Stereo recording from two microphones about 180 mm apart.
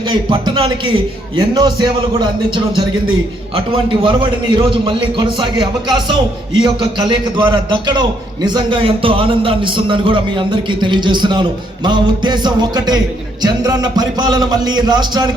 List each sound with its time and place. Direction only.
0.1 s a man's voice: 25° right (ahead or behind)
4.0 s a man's voice: 25° right (ahead or behind)